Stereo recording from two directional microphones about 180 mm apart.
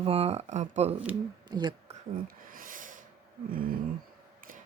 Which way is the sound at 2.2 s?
50° right (ahead or behind).